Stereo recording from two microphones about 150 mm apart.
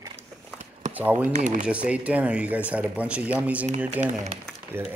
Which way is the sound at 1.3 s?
60° right (ahead or behind).